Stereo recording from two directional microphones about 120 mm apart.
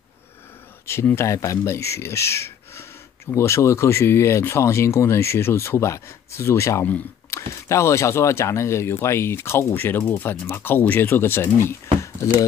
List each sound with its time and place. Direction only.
0.8 s speech: 20° left (ahead or behind)